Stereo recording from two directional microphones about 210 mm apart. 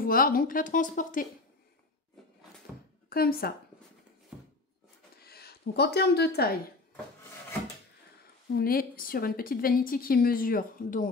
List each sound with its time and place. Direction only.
0.0 s speech: 45° left (ahead or behind)
2.7 s a sound: 5° right (ahead or behind)
3.1 s a woman's voice: 45° left (ahead or behind)
5.2 s speech: 45° left (ahead or behind)
8.5 s a woman's voice: 45° left (ahead or behind)